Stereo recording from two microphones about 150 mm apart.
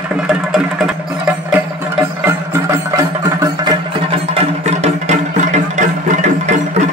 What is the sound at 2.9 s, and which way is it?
Music, 20° right (ahead or behind).